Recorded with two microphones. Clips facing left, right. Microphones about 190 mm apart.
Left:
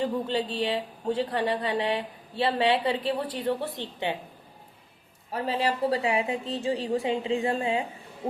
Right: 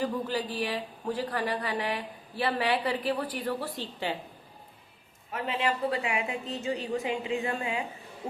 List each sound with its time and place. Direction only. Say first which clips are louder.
0.0 s speech: left 3 dB; 25° left (ahead or behind)
5.3 s a woman's voice: left 3 dB; 35° left (ahead or behind)